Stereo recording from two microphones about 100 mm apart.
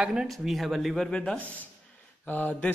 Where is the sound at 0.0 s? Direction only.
10° right (ahead or behind).